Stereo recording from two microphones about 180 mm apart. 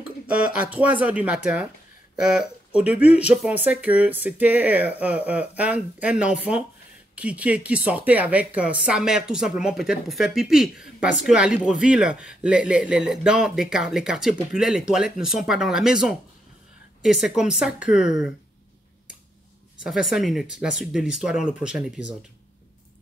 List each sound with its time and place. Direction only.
0.3 s a woman's voice: 5° right (ahead or behind)
19.8 s a woman's voice: centre (ahead or behind)